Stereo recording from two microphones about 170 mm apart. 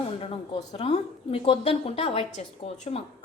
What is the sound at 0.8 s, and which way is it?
A woman's voice, 35° left (ahead or behind).